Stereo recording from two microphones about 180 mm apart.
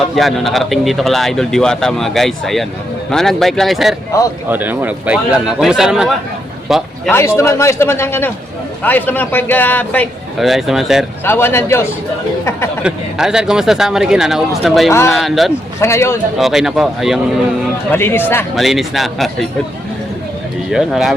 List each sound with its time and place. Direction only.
0.2 s speech: centre (ahead or behind)
4.1 s a man's voice: 15° left (ahead or behind)
4.4 s a man's voice: 10° right (ahead or behind)
7.1 s a man's voice: 15° left (ahead or behind)
10.3 s speech: centre (ahead or behind)
11.3 s a man's voice: 15° left (ahead or behind)
12.8 s speech: 5° right (ahead or behind)
14.8 s a man's voice: 15° left (ahead or behind)
15.1 s speech: centre (ahead or behind)
15.8 s a man's voice: 15° left (ahead or behind)
16.4 s speech: centre (ahead or behind)
17.9 s a man's voice: 10° left (ahead or behind)
18.5 s speech: centre (ahead or behind)
20.7 s speech: centre (ahead or behind)